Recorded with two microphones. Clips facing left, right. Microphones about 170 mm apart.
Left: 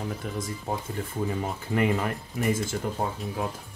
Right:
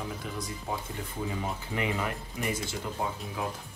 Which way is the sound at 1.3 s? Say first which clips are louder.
Left 4 dB; 50° left (ahead or behind).